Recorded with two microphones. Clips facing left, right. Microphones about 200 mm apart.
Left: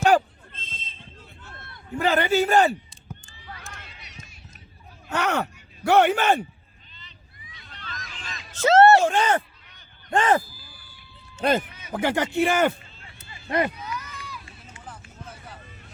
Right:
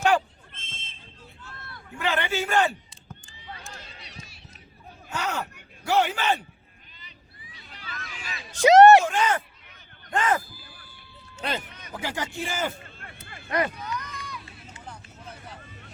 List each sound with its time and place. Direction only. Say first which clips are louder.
0.5 s fire alarm: left 3 dB; 25° right (ahead or behind)
1.5 s a sound: right 2 dB; 20° left (ahead or behind)
2.0 s a man's voice: left 6 dB; 40° left (ahead or behind)
3.5 s a sound: even; 30° right (ahead or behind)
5.1 s a man's voice: left 6 dB; 65° left (ahead or behind)
7.7 s a sound: even; 10° right (ahead or behind)
9.0 s a man's voice: left 3 dB; 30° left (ahead or behind)
11.3 s speech: left 9 dB; 45° left (ahead or behind)
11.9 s a man's voice: left 8 dB; 55° left (ahead or behind)
13.0 s a sound: right 3 dB; 55° right (ahead or behind)
13.7 s run: right 1 dB; 5° left (ahead or behind)
14.8 s vehicle: left 1 dB; 5° left (ahead or behind)